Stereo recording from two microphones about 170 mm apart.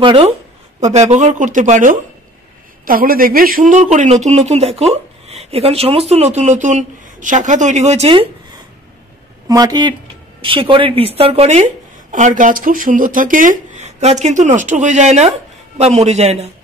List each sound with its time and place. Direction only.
0.0 s speech: 30° right (ahead or behind)
0.9 s a man's voice: 40° right (ahead or behind)
9.5 s a man's voice: 20° right (ahead or behind); by 16.4 s 40° right (ahead or behind)